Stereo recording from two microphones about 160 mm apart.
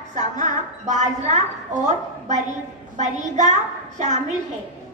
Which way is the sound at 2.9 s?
45° right (ahead or behind).